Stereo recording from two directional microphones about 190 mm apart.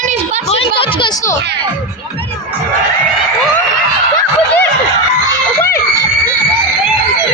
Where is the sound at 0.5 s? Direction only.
30° left (ahead or behind).